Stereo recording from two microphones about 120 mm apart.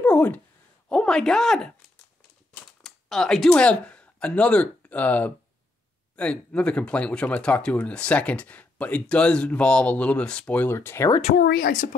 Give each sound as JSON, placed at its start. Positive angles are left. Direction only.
{"t": 0.0, "sound": "a sound", "side_deg": 10}
{"t": 0.8, "sound": "speech", "side_deg": 5}
{"t": 11.1, "sound": "a woman's voice", "side_deg": 80}